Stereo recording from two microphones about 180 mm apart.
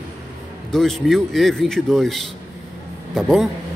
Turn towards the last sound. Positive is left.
turn(degrees=0)  # may be behind; listen again after turning